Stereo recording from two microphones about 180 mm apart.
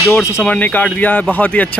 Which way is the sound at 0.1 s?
15° left (ahead or behind).